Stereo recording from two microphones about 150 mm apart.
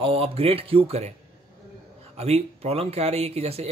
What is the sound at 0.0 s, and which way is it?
Speech, 40° right (ahead or behind).